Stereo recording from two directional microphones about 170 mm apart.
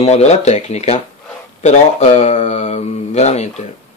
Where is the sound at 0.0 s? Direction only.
40° left (ahead or behind).